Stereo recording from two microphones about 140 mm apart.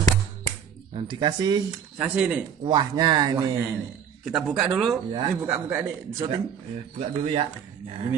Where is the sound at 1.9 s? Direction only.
10° right (ahead or behind).